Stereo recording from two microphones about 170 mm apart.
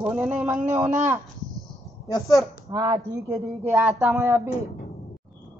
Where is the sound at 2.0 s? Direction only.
20° left (ahead or behind).